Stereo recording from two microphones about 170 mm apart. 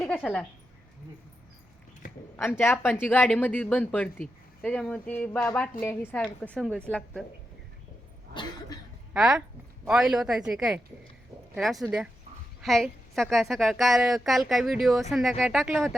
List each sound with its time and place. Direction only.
0.0 s speech: 5° left (ahead or behind)
2.3 s speech: 10° left (ahead or behind)
8.3 s cough: 25° left (ahead or behind)
9.1 s a woman's voice: 5° right (ahead or behind)